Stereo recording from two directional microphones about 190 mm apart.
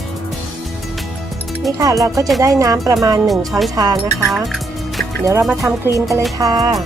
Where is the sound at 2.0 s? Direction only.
20° right (ahead or behind).